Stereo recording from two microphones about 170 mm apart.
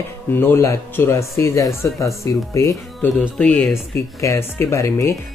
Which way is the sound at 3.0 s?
5° left (ahead or behind).